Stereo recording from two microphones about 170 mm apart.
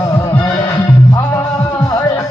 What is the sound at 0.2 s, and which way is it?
Music, 20° left (ahead or behind).